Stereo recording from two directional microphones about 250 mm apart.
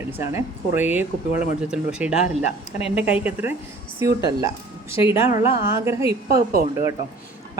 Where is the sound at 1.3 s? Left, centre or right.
Left.